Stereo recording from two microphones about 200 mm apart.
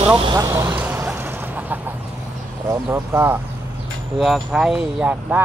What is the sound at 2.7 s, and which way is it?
Speech, 15° right (ahead or behind).